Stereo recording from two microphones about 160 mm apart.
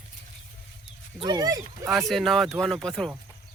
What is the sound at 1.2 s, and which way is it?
Speech, 25° right (ahead or behind).